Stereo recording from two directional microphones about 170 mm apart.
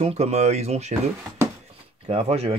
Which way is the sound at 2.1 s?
35° right (ahead or behind).